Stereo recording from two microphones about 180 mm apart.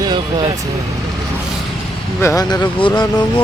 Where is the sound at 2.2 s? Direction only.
20° left (ahead or behind).